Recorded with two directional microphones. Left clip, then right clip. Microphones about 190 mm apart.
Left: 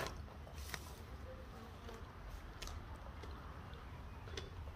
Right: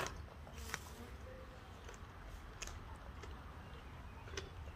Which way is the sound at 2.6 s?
5° left (ahead or behind).